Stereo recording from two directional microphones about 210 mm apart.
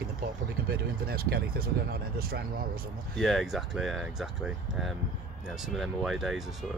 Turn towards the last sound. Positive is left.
turn(degrees=0)  # may be behind; listen again after turning